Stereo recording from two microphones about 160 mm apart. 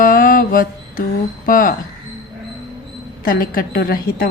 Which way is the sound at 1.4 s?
60° left (ahead or behind).